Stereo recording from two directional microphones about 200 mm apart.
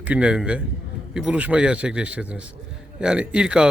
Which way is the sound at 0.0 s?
5° right (ahead or behind).